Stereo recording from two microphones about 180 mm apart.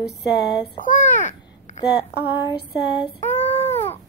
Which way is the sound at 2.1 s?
65° left (ahead or behind).